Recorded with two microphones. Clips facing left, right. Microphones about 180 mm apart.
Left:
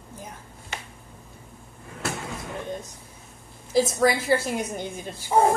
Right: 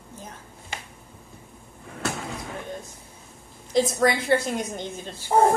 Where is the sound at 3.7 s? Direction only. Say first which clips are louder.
Even; centre (ahead or behind).